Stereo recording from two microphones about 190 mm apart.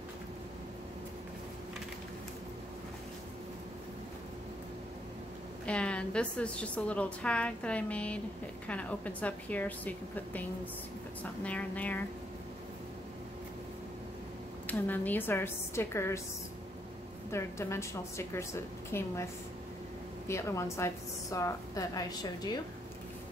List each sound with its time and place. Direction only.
5.7 s a woman's voice: 5° left (ahead or behind)
14.7 s a woman's voice: 10° left (ahead or behind)
17.3 s a woman's voice: 15° left (ahead or behind)
20.2 s a woman's voice: 15° left (ahead or behind)